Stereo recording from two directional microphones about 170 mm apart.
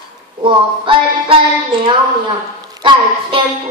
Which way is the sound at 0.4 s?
30° right (ahead or behind).